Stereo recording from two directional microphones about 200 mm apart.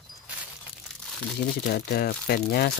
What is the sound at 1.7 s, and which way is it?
Speech, 50° left (ahead or behind).